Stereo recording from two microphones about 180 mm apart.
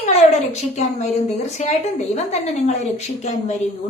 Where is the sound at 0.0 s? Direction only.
40° left (ahead or behind).